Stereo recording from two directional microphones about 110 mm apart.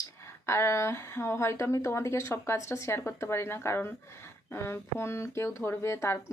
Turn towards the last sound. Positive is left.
turn(degrees=25)  # may be behind; listen again after turning